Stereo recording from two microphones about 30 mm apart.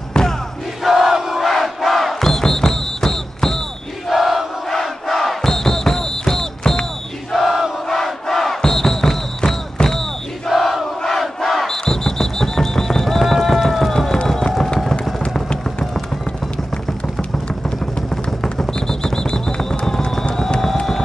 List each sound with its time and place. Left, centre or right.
0.8 s crowd: centre
1.4 s crowd: centre
2.3 s music: centre
4.1 s battle cry: centre
4.6 s battle cry: centre
7.3 s battle cry: centre
7.9 s battle cry: centre
10.5 s crowd: centre
11.9 s music: centre
17.6 s a sound: centre
19.9 s music: centre